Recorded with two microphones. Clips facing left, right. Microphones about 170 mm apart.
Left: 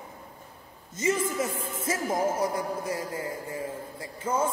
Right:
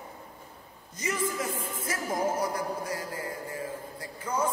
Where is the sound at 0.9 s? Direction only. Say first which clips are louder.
Left 4 dB; 25° left (ahead or behind).